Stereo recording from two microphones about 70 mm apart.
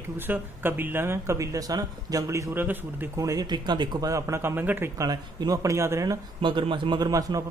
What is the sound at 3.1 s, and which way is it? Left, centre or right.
Speech, right.